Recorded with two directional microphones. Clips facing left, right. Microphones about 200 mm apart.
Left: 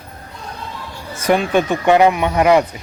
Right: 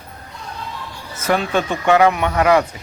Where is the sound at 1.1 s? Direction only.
10° left (ahead or behind).